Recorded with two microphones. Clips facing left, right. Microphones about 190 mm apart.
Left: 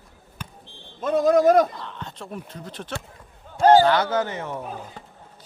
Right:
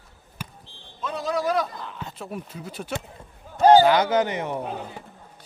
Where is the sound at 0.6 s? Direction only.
50° left (ahead or behind).